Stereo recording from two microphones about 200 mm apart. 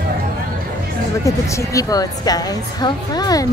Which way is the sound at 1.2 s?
15° left (ahead or behind).